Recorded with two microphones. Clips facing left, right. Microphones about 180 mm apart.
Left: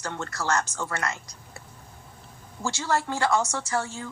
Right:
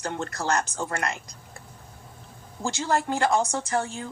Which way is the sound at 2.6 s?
20° right (ahead or behind).